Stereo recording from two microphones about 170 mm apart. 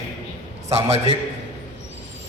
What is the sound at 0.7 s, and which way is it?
Speech, 40° right (ahead or behind).